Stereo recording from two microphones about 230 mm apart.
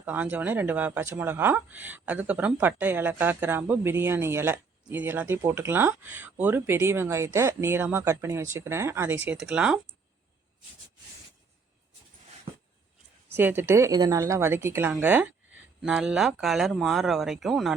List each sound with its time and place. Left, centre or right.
0.0 s speech: centre
13.2 s speech: centre